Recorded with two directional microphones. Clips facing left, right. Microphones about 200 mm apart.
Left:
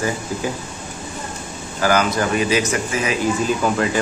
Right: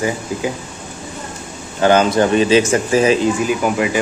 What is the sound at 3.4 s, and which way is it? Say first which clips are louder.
Speech: right 2 dB; 10° right (ahead or behind).